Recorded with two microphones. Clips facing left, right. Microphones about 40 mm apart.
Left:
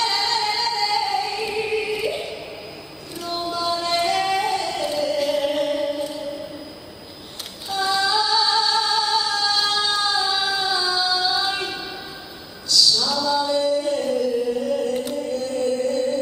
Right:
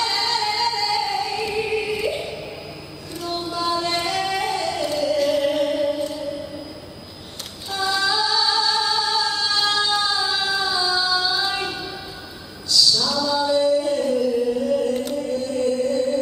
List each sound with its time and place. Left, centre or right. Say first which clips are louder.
0.0 s music: even; centre
3.2 s a sound: even; centre
3.5 s singing: even; centre
7.7 s female singing: left 1 dB; centre
10.1 s a sound: left 1 dB; centre
10.6 s music: even; centre
12.9 s singing: even; centre